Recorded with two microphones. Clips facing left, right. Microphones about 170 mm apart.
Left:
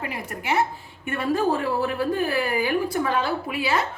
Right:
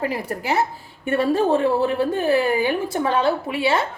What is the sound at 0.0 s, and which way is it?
A woman's voice, 35° right (ahead or behind).